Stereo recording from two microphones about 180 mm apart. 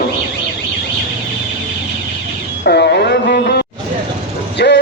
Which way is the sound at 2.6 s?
65° left (ahead or behind).